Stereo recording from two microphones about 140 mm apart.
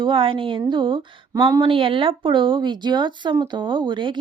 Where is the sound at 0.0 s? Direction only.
40° right (ahead or behind).